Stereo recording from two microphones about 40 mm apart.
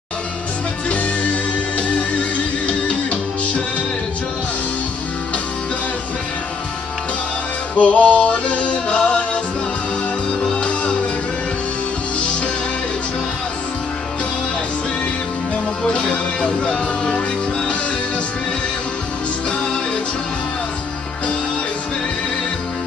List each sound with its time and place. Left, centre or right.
0.8 s music: left
7.7 s music: left
10.4 s music: left
15.9 s music: left